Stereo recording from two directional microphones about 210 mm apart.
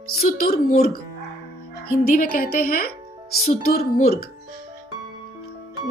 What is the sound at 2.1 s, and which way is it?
Speech, 45° left (ahead or behind).